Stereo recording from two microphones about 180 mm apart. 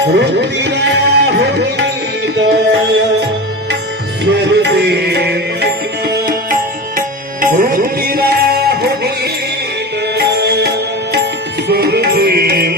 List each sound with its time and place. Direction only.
0.0 s music: 70° right (ahead or behind)
4.3 s music: 65° right (ahead or behind)
7.4 s music: 50° right (ahead or behind)